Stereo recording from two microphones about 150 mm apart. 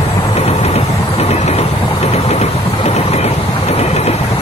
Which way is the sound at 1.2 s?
45° left (ahead or behind).